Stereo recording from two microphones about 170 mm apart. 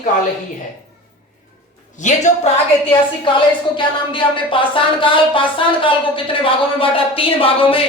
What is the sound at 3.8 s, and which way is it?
A woman's voice, 30° left (ahead or behind).